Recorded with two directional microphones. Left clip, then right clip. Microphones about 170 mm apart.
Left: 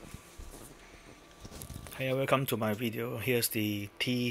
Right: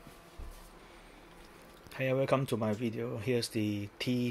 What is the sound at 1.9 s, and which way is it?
Speech, centre (ahead or behind).